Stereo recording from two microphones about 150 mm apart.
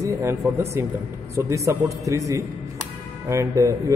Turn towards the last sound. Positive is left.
turn(degrees=-20)  # may be behind; listen again after turning